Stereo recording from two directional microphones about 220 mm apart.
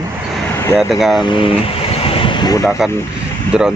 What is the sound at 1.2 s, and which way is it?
Speech, 20° left (ahead or behind).